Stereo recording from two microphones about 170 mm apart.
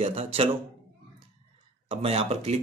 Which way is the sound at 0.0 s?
35° right (ahead or behind).